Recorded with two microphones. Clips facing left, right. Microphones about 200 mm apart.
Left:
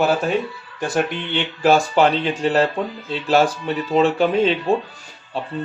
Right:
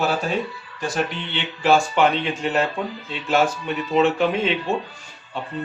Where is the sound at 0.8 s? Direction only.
50° left (ahead or behind).